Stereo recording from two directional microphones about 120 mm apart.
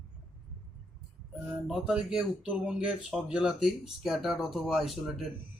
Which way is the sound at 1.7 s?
5° right (ahead or behind).